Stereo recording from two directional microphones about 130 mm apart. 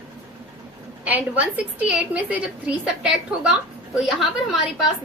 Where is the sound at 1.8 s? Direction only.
10° right (ahead or behind).